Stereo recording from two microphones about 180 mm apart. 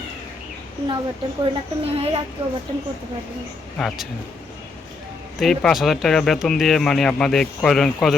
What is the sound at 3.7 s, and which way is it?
Speech, 5° left (ahead or behind).